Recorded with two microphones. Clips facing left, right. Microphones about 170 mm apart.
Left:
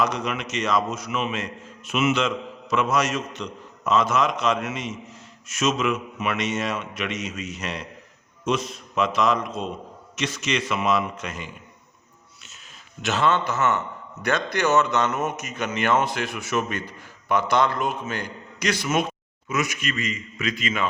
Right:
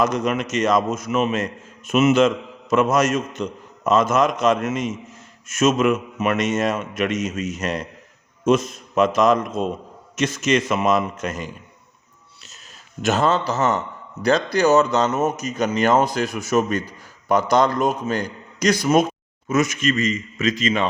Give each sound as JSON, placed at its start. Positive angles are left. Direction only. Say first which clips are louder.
{"t": 0.0, "sound": "a man's voice", "louder": "right 5 dB", "side_deg": -45}
{"t": 13.0, "sound": "a man's voice", "louder": "right 3 dB", "side_deg": -45}